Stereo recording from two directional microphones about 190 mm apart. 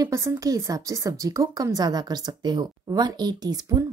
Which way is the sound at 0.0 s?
15° right (ahead or behind).